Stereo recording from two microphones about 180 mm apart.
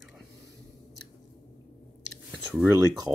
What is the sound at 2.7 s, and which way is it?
Speech, 20° right (ahead or behind).